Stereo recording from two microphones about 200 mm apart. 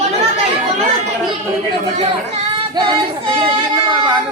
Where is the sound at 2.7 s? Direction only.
20° right (ahead or behind).